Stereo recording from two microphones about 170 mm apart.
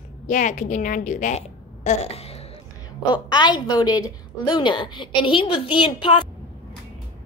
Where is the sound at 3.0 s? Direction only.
25° left (ahead or behind).